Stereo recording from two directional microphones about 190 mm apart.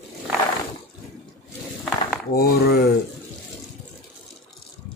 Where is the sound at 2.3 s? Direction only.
55° left (ahead or behind).